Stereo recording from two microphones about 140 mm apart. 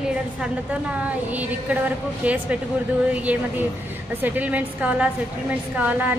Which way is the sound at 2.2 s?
10° right (ahead or behind).